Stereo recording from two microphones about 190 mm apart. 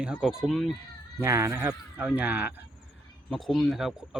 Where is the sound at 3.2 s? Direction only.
Centre (ahead or behind).